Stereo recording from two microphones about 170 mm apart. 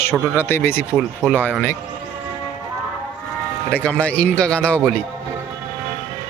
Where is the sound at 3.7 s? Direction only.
10° left (ahead or behind).